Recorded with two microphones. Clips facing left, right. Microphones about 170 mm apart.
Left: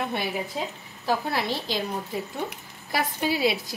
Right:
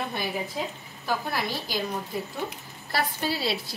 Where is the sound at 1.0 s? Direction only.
25° left (ahead or behind).